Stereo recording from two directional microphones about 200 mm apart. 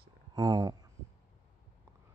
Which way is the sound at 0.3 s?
20° right (ahead or behind).